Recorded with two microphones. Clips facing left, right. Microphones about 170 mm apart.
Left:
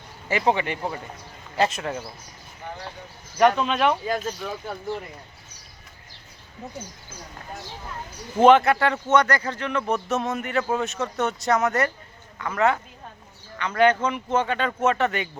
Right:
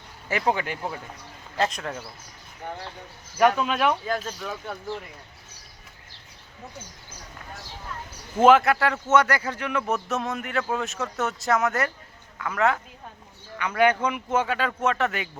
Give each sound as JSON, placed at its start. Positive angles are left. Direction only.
{"t": 0.3, "sound": "a man's voice", "side_deg": 0}
{"t": 3.3, "sound": "a man's voice", "side_deg": -5}
{"t": 8.4, "sound": "a man's voice", "side_deg": 0}